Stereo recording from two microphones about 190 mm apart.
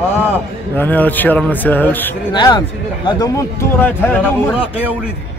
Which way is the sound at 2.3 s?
25° left (ahead or behind).